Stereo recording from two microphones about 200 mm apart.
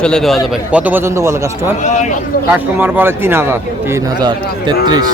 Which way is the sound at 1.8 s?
35° left (ahead or behind).